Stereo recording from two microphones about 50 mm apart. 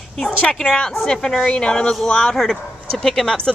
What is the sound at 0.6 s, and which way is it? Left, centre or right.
Speech, centre.